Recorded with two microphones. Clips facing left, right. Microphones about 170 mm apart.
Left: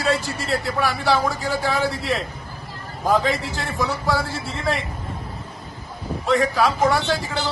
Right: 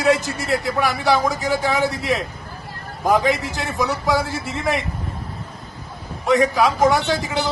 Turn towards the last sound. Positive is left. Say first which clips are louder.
# right 2 dB
turn(degrees=-15)  # may be behind; listen again after turning